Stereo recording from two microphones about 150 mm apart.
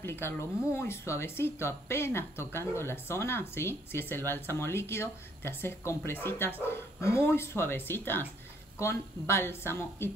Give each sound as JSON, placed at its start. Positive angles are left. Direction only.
{"t": 0.0, "sound": "speech", "side_deg": 15}